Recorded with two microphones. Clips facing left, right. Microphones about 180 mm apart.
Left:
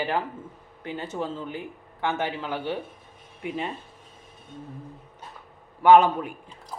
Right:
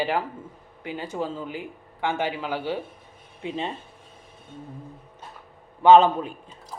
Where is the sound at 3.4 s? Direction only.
25° right (ahead or behind).